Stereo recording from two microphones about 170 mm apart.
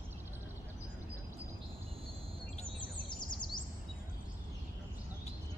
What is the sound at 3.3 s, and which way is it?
Bird vocalization, 25° left (ahead or behind).